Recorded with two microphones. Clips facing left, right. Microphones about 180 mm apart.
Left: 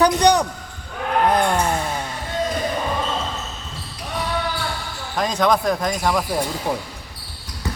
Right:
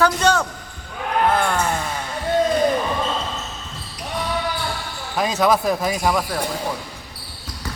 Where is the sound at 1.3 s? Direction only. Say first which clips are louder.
Left 2 dB; 15° left (ahead or behind).